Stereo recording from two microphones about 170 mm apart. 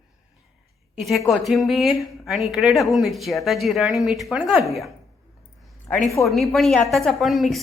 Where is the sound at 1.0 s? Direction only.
Centre (ahead or behind).